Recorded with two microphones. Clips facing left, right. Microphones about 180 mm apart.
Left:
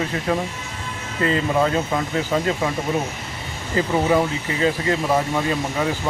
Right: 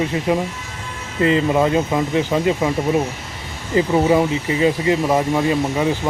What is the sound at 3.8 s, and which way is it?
A man's voice, 15° right (ahead or behind).